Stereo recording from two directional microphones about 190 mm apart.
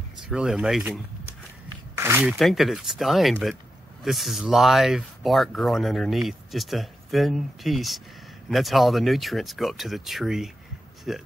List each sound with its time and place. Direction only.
0.3 s speech: 5° right (ahead or behind)
2.0 s speech: 10° right (ahead or behind)
2.3 s speech: centre (ahead or behind)